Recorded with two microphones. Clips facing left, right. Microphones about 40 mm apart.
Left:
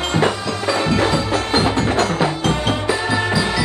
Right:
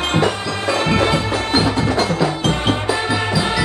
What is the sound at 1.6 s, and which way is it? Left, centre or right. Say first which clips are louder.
Music: even; left.